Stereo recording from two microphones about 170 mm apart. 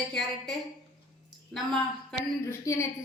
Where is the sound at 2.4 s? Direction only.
15° left (ahead or behind).